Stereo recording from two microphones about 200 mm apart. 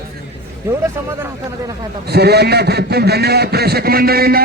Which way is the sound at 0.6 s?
15° right (ahead or behind).